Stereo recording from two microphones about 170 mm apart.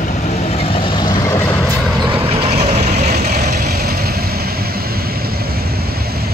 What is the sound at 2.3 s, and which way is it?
Vehicle, 40° right (ahead or behind).